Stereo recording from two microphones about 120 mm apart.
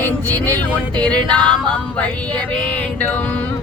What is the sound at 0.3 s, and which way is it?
Music, 15° left (ahead or behind).